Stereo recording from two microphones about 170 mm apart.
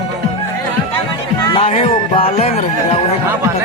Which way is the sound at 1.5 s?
35° left (ahead or behind).